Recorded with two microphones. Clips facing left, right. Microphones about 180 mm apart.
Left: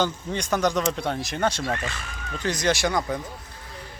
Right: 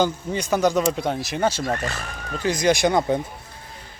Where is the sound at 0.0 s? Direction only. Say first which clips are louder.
Right 3 dB; 10° right (ahead or behind).